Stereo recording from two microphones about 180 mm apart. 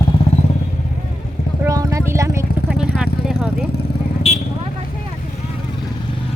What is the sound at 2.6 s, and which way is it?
Vehicle, 5° right (ahead or behind).